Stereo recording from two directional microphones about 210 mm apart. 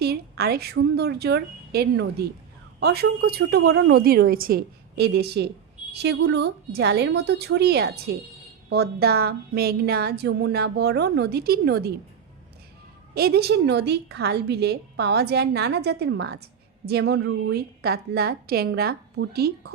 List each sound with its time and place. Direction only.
0.0 s a woman's voice: 50° right (ahead or behind)
13.1 s a woman's voice: 50° right (ahead or behind)